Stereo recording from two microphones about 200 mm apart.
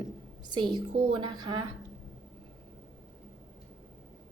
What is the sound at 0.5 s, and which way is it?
A woman's voice, 25° right (ahead or behind).